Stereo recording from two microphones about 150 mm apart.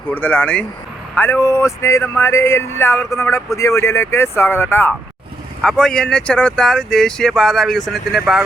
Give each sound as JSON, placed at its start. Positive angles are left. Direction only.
{"t": 0.1, "sound": "speech", "side_deg": 10}
{"t": 5.6, "sound": "speech", "side_deg": 5}